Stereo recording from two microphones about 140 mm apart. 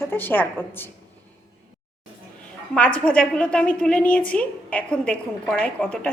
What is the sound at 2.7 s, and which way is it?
A woman's voice, 10° left (ahead or behind).